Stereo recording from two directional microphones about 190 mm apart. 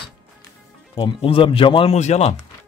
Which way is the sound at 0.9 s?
30° left (ahead or behind).